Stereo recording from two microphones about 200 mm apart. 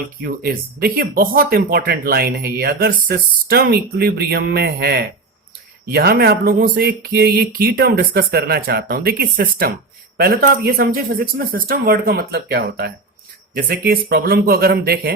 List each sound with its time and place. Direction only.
0.2 s speech: 50° right (ahead or behind)